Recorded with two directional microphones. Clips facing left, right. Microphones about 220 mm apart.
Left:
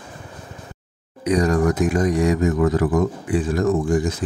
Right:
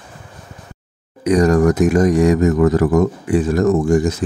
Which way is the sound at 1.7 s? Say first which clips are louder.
Right 5 dB; 70° right (ahead or behind).